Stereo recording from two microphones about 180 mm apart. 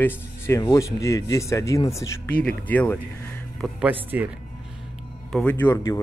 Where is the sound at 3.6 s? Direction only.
5° right (ahead or behind).